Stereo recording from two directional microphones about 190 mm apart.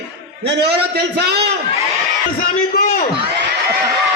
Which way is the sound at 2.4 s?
50° left (ahead or behind).